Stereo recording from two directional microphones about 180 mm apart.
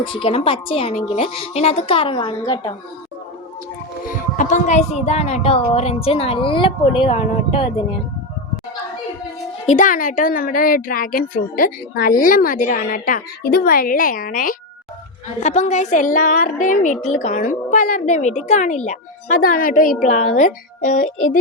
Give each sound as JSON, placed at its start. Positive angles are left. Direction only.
{"t": 0.0, "sound": "a woman's voice", "side_deg": 30}
{"t": 4.1, "sound": "a woman's voice", "side_deg": 45}
{"t": 9.6, "sound": "a woman's voice", "side_deg": 45}
{"t": 15.4, "sound": "a woman's voice", "side_deg": 40}